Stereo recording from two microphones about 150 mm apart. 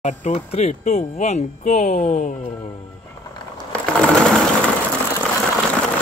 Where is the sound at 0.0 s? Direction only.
50° left (ahead or behind).